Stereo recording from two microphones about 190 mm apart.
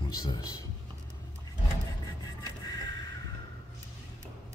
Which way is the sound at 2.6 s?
20° left (ahead or behind).